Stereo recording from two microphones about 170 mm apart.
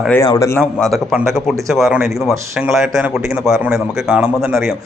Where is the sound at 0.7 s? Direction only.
Centre (ahead or behind).